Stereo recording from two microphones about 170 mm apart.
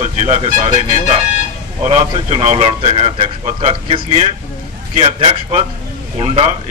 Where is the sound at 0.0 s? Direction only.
40° right (ahead or behind).